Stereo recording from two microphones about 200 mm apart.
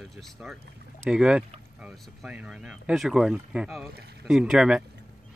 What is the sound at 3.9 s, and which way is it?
Speech, 55° right (ahead or behind).